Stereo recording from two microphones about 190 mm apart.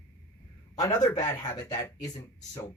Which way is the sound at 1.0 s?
15° left (ahead or behind).